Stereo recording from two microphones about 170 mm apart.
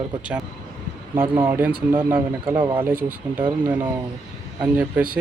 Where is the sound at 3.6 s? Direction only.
10° right (ahead or behind).